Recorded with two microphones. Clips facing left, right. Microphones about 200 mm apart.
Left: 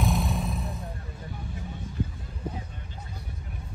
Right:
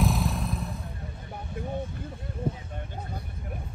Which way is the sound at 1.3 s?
55° right (ahead or behind).